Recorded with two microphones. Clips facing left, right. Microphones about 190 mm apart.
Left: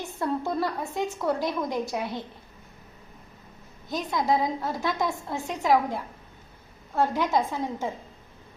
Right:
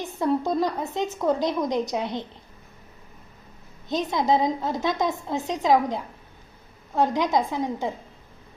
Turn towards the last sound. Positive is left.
turn(degrees=-15)  # may be behind; listen again after turning